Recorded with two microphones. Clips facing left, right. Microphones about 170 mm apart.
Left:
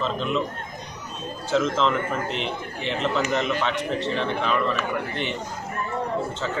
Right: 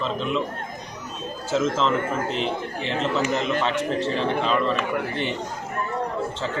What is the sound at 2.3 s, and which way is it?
Speech, 35° right (ahead or behind).